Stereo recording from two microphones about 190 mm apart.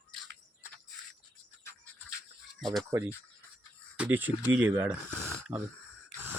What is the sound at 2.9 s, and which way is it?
Speech, 10° right (ahead or behind).